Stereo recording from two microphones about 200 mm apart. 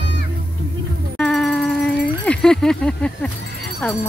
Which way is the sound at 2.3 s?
5° left (ahead or behind).